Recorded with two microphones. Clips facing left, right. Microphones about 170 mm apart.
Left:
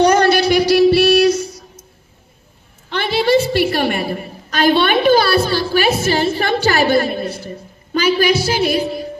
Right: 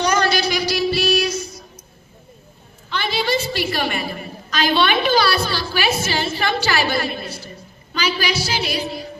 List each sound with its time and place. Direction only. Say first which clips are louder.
0.0 s female singing: left 7 dB; 60° left (ahead or behind)
2.9 s a sound: left 7 dB; 65° left (ahead or behind)
7.9 s a woman's voice: left 8 dB; 55° left (ahead or behind)